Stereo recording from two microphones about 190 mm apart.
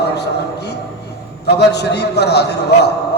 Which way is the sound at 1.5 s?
60° left (ahead or behind).